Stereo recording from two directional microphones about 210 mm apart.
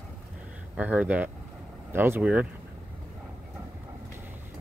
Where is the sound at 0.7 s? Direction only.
5° right (ahead or behind).